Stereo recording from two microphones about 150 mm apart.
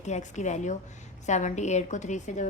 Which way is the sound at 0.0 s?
50° left (ahead or behind).